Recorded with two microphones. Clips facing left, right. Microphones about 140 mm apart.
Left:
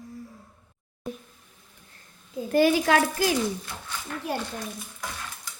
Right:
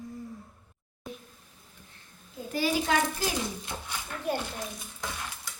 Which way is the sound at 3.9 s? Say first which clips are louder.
Left 3 dB; 15° right (ahead or behind).